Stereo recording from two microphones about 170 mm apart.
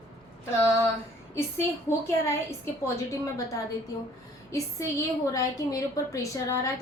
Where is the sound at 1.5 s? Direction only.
15° left (ahead or behind).